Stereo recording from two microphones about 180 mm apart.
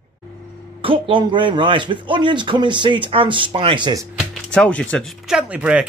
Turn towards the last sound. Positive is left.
turn(degrees=-5)  # may be behind; listen again after turning